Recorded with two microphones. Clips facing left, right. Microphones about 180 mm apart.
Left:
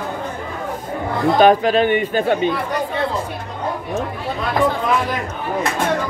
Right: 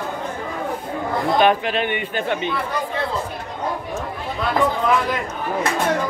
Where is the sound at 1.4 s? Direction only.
40° left (ahead or behind).